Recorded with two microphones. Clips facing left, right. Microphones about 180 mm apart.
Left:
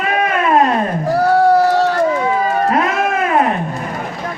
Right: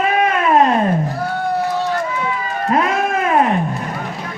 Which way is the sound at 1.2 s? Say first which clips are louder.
Left 9 dB; 85° left.